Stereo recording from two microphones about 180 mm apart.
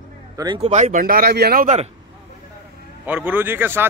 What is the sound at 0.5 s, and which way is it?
Speech, 35° right (ahead or behind).